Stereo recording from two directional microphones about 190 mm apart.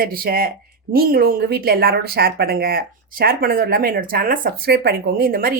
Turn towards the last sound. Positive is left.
turn(degrees=-50)  # may be behind; listen again after turning